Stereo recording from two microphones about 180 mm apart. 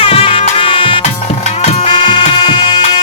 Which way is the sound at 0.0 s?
30° left (ahead or behind).